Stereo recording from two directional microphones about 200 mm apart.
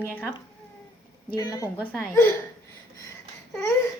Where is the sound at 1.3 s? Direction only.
15° left (ahead or behind).